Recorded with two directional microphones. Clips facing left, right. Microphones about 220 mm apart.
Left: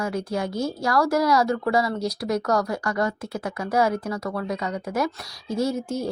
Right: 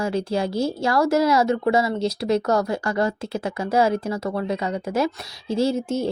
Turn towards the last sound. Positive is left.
turn(degrees=-25)  # may be behind; listen again after turning